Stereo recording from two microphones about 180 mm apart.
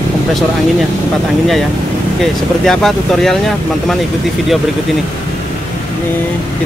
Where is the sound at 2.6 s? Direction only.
Centre (ahead or behind).